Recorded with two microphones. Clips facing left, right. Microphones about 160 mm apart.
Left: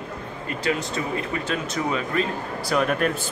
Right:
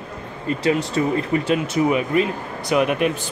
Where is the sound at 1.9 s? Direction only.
15° right (ahead or behind).